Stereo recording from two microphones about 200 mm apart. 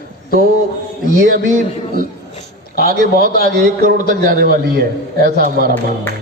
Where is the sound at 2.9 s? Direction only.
45° right (ahead or behind).